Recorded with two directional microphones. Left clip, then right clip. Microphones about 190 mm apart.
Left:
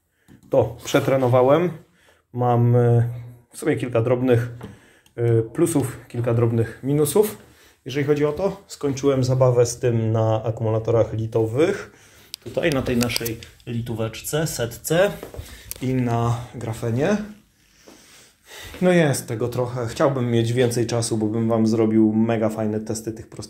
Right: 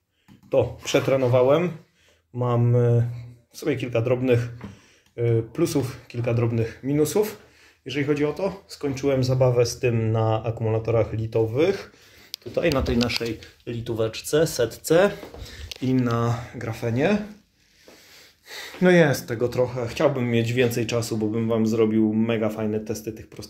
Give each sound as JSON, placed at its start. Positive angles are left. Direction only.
{"t": 0.5, "sound": "speech", "side_deg": 0}
{"t": 13.7, "sound": "speech", "side_deg": -20}
{"t": 16.1, "sound": "speech", "side_deg": -10}
{"t": 18.5, "sound": "speech", "side_deg": -30}
{"t": 18.9, "sound": "speech", "side_deg": -10}